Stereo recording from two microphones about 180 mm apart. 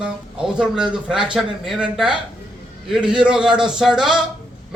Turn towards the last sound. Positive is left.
turn(degrees=-5)  # may be behind; listen again after turning